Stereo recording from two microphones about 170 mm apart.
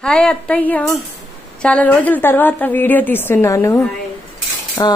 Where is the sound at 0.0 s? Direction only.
5° left (ahead or behind).